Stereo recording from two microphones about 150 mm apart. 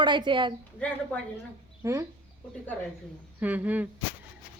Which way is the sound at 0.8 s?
10° left (ahead or behind).